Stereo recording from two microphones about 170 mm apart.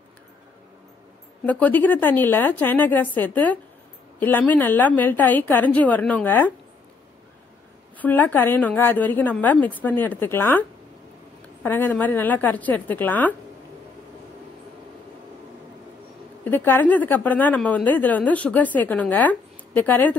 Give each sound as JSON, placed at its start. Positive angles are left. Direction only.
{"t": 1.4, "sound": "a woman's voice", "side_deg": 10}
{"t": 8.0, "sound": "a woman's voice", "side_deg": 10}
{"t": 11.6, "sound": "a woman's voice", "side_deg": 10}
{"t": 16.4, "sound": "a woman's voice", "side_deg": 10}